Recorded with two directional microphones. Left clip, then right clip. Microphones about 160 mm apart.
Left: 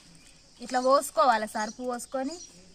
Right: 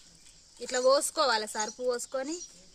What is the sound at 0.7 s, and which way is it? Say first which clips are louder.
Speech: left 2 dB; 90° right.